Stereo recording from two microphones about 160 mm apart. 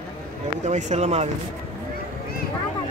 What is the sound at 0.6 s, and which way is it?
Speech, 45° right (ahead or behind).